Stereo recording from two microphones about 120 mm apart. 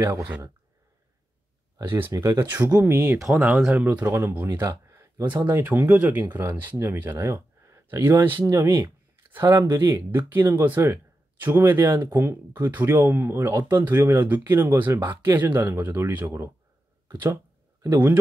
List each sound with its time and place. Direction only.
0.0 s speech: 20° right (ahead or behind)
1.8 s speech: 20° right (ahead or behind)
3.3 s speech: 10° right (ahead or behind)
4.6 s a sound: 25° right (ahead or behind)
5.5 s speech: 15° right (ahead or behind)